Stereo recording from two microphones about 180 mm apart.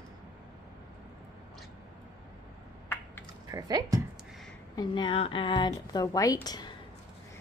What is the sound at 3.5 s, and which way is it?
Speech, 20° right (ahead or behind).